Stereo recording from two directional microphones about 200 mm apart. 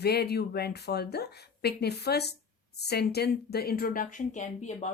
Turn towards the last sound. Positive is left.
turn(degrees=35)  # may be behind; listen again after turning